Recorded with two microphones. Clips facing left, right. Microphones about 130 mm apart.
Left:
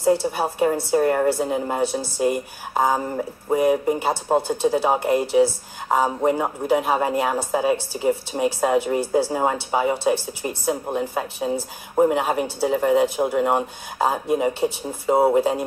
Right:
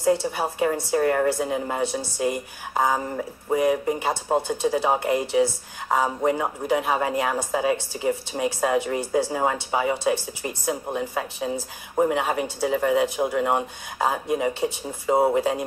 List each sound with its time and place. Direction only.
0.0 s a woman's voice: 5° left (ahead or behind)